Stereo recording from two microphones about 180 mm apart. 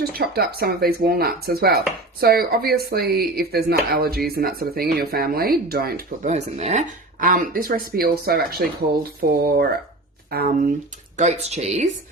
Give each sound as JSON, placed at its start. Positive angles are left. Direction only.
{"t": 0.0, "sound": "speech", "side_deg": -60}
{"t": 6.3, "sound": "speech", "side_deg": -40}
{"t": 11.2, "sound": "speech", "side_deg": -40}